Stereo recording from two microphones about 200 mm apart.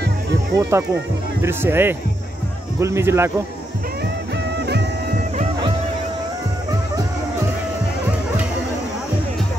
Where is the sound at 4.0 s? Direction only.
55° right (ahead or behind).